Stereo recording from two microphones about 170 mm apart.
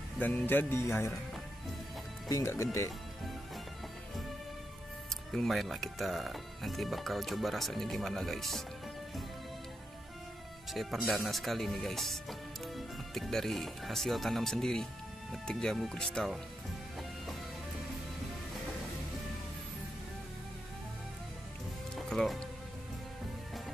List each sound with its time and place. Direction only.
0.2 s speech: 10° left (ahead or behind)
2.2 s speech: 20° left (ahead or behind)
5.3 s speech: centre (ahead or behind)
10.7 s speech: centre (ahead or behind)
21.9 s music: centre (ahead or behind)